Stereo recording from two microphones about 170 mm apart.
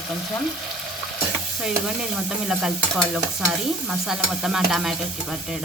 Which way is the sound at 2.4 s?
Centre (ahead or behind).